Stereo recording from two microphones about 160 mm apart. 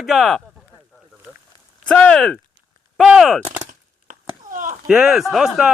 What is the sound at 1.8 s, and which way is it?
A man's voice, 5° left (ahead or behind).